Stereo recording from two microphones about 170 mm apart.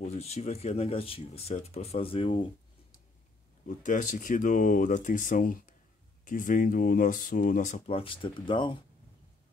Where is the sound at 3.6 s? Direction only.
50° left (ahead or behind).